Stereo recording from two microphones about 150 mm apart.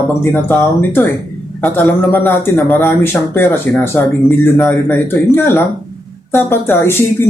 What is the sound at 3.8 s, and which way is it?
Speech, 15° left (ahead or behind).